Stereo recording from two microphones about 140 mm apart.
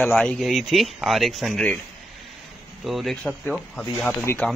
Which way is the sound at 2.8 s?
Centre (ahead or behind).